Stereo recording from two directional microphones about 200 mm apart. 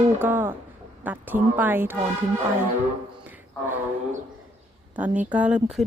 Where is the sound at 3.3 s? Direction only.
10° right (ahead or behind).